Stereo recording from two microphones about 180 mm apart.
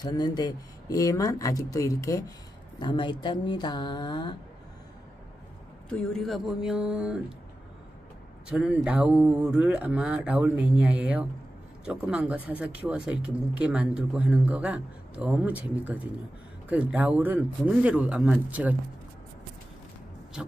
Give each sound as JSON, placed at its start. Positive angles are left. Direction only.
{"t": 0.0, "sound": "speech", "side_deg": 20}
{"t": 5.9, "sound": "speech", "side_deg": 5}
{"t": 8.5, "sound": "speech", "side_deg": -5}